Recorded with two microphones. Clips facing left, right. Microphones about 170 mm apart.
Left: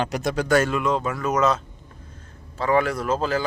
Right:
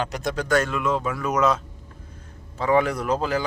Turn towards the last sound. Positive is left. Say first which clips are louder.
# even
turn(degrees=-15)  # may be behind; listen again after turning